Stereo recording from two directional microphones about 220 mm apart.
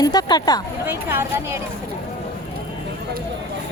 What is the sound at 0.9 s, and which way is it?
Speech, 10° right (ahead or behind).